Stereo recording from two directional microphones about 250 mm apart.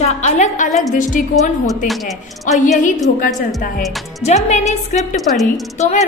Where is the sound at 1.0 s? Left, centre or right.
Left.